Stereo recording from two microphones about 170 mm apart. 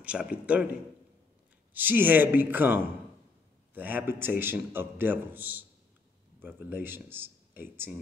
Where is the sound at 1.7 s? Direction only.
10° right (ahead or behind).